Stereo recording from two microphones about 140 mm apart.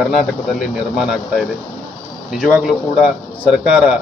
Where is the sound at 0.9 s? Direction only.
5° right (ahead or behind).